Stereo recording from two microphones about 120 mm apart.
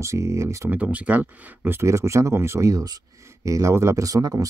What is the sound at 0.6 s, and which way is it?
Speech, 10° right (ahead or behind).